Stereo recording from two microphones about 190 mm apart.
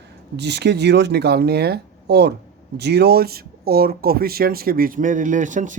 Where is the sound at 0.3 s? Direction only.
65° right (ahead or behind).